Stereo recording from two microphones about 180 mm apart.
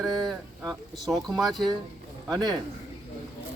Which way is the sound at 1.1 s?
20° right (ahead or behind).